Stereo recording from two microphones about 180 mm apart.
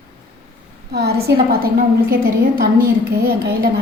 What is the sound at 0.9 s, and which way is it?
A woman's voice, 65° right (ahead or behind).